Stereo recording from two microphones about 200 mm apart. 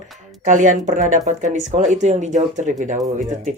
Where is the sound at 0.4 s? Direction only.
40° right (ahead or behind).